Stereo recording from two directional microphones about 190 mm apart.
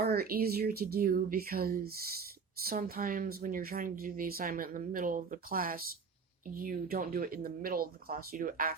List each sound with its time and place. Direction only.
0.0 s speech: 55° right (ahead or behind)